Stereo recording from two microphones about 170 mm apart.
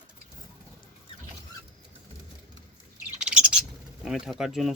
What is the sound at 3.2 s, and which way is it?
Bird, 5° right (ahead or behind).